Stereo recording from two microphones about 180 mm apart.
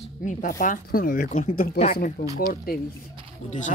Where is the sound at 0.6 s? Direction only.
50° left (ahead or behind).